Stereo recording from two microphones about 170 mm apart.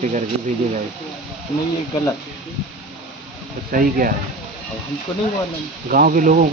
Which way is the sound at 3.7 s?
55° right (ahead or behind).